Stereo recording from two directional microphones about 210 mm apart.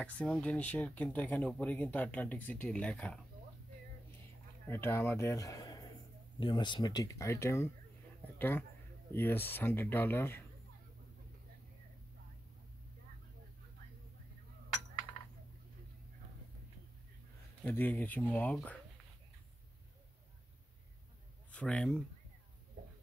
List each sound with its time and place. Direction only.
0.0 s speech: 5° left (ahead or behind)
4.6 s speech: 10° left (ahead or behind)
8.2 s a sound: 10° left (ahead or behind)
9.1 s speech: 10° left (ahead or behind)
17.6 s speech: 10° left (ahead or behind)
21.5 s speech: 5° left (ahead or behind)